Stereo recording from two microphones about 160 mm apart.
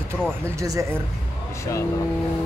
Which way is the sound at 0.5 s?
20° right (ahead or behind).